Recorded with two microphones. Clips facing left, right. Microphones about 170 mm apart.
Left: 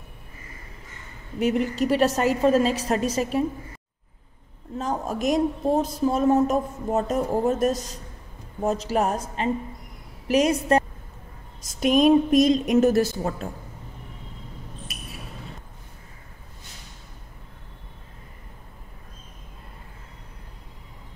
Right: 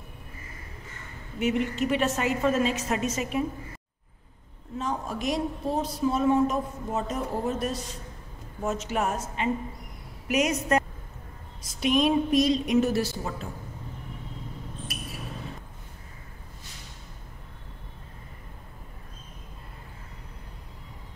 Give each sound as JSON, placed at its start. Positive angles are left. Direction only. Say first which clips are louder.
{"t": 1.4, "sound": "a woman's voice", "louder": "left 3 dB", "side_deg": 35}
{"t": 4.7, "sound": "a woman's voice", "louder": "left 4 dB", "side_deg": 45}
{"t": 11.8, "sound": "a woman's voice", "louder": "left 6 dB", "side_deg": 45}